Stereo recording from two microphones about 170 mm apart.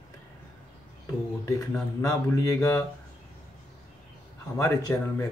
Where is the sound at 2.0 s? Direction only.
20° left (ahead or behind).